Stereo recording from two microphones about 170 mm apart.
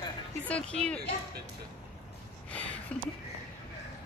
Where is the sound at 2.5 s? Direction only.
10° left (ahead or behind).